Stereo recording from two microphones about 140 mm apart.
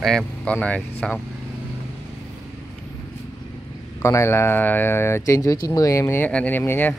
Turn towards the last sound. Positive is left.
turn(degrees=15)  # may be behind; listen again after turning